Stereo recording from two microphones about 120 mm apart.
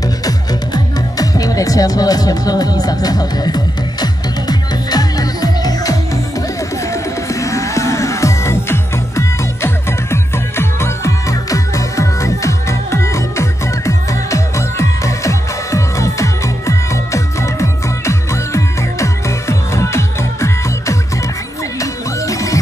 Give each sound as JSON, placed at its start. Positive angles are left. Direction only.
{"t": 1.1, "sound": "music", "side_deg": 30}